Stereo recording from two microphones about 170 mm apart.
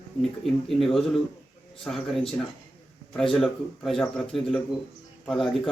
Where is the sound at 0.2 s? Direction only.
Centre (ahead or behind).